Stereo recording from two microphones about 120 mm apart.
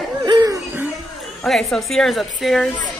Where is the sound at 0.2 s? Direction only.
35° right (ahead or behind).